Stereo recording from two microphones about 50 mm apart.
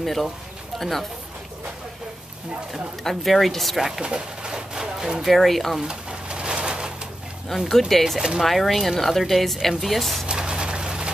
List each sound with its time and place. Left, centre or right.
0.0 s speech: centre
3.0 s speech: centre
4.0 s bird: centre
5.2 s speech: centre
5.8 s a sound: centre
7.5 s speech: centre
10.2 s a sound: centre